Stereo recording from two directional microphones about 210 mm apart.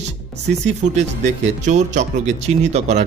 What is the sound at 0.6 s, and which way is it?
Speech, 35° right (ahead or behind).